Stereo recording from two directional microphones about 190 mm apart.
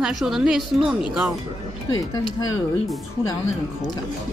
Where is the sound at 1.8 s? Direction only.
20° left (ahead or behind).